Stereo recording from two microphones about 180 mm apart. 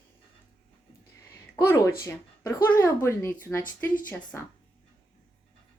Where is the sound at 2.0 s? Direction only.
15° left (ahead or behind).